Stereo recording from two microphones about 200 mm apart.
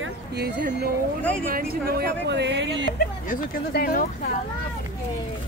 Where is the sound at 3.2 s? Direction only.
45° left (ahead or behind).